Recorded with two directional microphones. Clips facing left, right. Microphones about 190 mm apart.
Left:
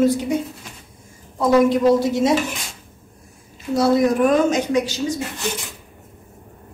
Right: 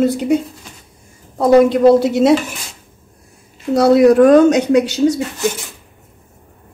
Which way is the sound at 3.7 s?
70° right (ahead or behind).